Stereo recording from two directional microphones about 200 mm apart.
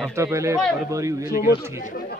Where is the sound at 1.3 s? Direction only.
45° left (ahead or behind).